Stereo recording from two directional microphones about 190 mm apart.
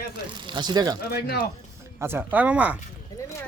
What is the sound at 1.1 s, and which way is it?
Speech, 55° left (ahead or behind).